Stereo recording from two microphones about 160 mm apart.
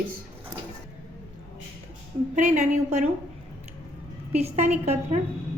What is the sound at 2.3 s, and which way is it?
Speech, 50° right (ahead or behind).